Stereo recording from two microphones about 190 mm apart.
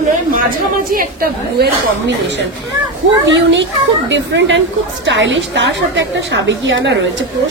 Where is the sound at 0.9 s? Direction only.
50° right (ahead or behind).